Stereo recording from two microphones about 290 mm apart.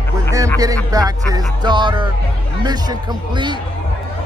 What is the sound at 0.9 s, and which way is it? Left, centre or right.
A man's voice, centre.